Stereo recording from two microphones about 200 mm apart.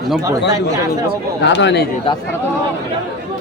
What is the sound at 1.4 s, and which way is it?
Speech, 60° left (ahead or behind).